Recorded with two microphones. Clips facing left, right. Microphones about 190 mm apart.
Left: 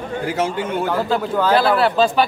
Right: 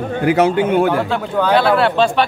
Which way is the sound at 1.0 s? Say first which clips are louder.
Right 1 dB; centre (ahead or behind).